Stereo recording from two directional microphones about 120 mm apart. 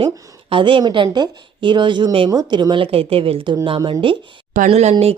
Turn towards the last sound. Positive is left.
turn(degrees=-65)  # may be behind; listen again after turning